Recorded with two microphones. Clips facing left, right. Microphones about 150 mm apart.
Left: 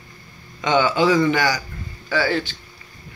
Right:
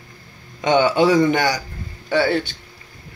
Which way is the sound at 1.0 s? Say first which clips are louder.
Right 1 dB; 35° right (ahead or behind).